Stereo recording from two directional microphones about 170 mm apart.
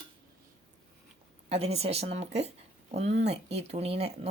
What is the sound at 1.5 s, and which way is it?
A woman's voice, 40° right (ahead or behind).